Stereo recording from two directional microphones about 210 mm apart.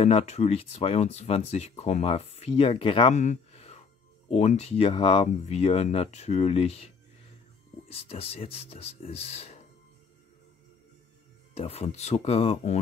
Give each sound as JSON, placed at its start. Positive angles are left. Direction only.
{"t": 0.0, "sound": "speech", "side_deg": 30}
{"t": 7.9, "sound": "speech", "side_deg": 25}
{"t": 11.5, "sound": "speech", "side_deg": 30}